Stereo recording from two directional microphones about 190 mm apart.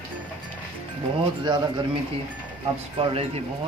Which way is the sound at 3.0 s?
30° right (ahead or behind).